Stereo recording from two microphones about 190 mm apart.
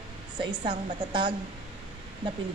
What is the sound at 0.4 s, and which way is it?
Speech, 25° right (ahead or behind).